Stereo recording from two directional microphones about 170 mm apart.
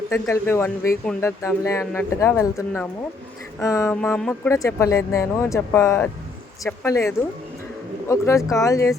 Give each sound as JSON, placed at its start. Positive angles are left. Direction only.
{"t": 0.1, "sound": "speech", "side_deg": 15}
{"t": 3.6, "sound": "a sound", "side_deg": 20}
{"t": 3.9, "sound": "speech", "side_deg": 10}